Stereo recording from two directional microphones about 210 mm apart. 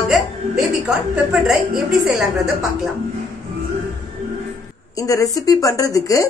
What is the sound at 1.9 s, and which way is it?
A woman's voice, 5° right (ahead or behind).